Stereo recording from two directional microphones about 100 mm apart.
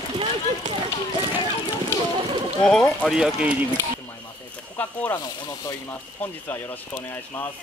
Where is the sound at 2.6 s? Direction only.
5° left (ahead or behind).